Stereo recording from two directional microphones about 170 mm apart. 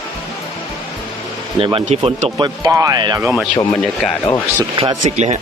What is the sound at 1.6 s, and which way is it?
Speech, 35° right (ahead or behind).